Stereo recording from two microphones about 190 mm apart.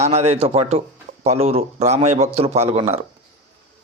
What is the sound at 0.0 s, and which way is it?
Speech, 35° right (ahead or behind).